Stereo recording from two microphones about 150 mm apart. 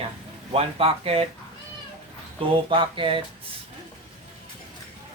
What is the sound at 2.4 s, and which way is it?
Speech, 35° right (ahead or behind).